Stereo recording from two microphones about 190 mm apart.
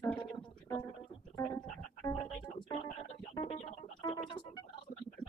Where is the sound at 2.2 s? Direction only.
25° left (ahead or behind).